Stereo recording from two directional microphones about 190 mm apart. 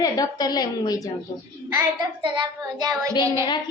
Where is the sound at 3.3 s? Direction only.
20° left (ahead or behind).